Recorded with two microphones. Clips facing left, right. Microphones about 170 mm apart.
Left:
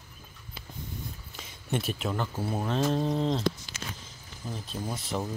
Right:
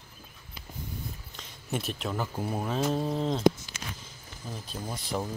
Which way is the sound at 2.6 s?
5° right (ahead or behind).